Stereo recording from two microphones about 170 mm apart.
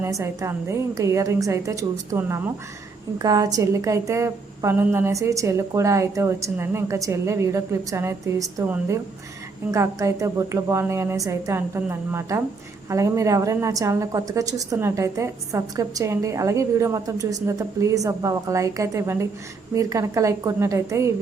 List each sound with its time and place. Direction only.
0.0 s a woman's voice: 15° right (ahead or behind)
9.7 s a woman's voice: 20° right (ahead or behind)